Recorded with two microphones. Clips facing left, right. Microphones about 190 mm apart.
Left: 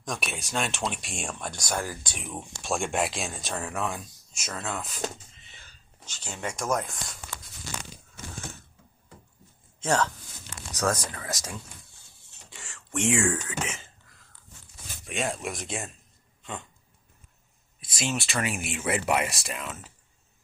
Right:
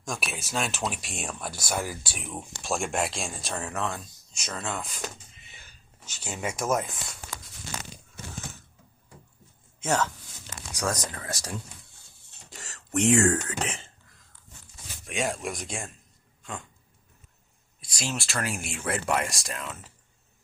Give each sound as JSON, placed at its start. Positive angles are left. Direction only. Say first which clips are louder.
{"t": 0.0, "sound": "speech", "louder": "left 1 dB", "side_deg": 0}
{"t": 6.1, "sound": "speech", "louder": "right 2 dB", "side_deg": -10}
{"t": 10.5, "sound": "a sound", "louder": "left 3 dB", "side_deg": -15}
{"t": 11.2, "sound": "speech", "louder": "even", "side_deg": -30}
{"t": 12.5, "sound": "a sound", "louder": "right 4 dB", "side_deg": -40}
{"t": 13.4, "sound": "speech", "louder": "right 1 dB", "side_deg": -35}
{"t": 15.0, "sound": "speech", "louder": "right 1 dB", "side_deg": 0}
{"t": 17.7, "sound": "speech", "louder": "left 3 dB", "side_deg": 0}